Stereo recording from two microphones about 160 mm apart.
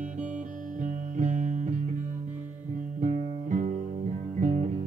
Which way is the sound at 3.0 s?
50° right (ahead or behind).